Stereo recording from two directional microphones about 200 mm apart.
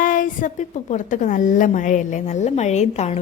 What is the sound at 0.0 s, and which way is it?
A woman's voice, 45° left (ahead or behind).